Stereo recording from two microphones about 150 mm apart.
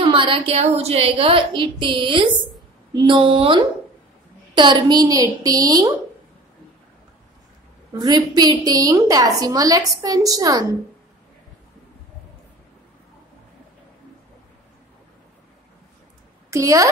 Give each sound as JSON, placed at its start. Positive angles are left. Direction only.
{"t": 0.0, "sound": "a woman's voice", "side_deg": -35}
{"t": 7.9, "sound": "a woman's voice", "side_deg": -25}
{"t": 16.4, "sound": "a woman's voice", "side_deg": -20}